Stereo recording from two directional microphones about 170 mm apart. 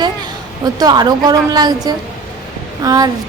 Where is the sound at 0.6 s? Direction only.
25° right (ahead or behind).